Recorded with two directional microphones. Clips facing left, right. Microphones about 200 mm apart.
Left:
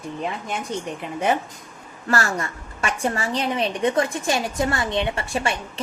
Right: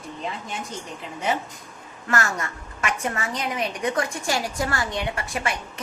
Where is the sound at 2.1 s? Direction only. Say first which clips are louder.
Left 2 dB; 35° left (ahead or behind).